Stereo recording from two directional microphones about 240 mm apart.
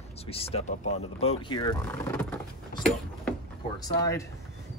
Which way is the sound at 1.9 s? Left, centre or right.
Centre.